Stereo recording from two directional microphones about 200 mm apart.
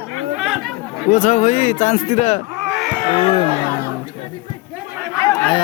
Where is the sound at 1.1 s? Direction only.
40° left (ahead or behind).